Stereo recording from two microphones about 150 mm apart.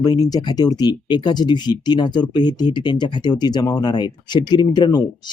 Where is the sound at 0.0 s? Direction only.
25° left (ahead or behind).